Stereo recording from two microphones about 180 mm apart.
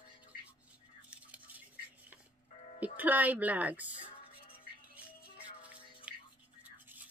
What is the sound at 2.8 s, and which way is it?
A woman's voice, 10° right (ahead or behind).